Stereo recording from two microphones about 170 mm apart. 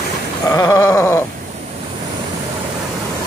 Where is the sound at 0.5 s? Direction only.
20° left (ahead or behind).